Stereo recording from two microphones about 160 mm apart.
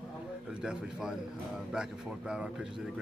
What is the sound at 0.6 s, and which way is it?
Speech, 5° right (ahead or behind).